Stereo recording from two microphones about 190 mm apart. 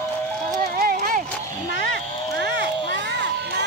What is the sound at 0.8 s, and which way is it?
Run, 50° right (ahead or behind).